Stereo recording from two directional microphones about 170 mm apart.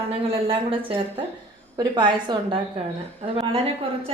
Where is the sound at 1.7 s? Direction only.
25° right (ahead or behind).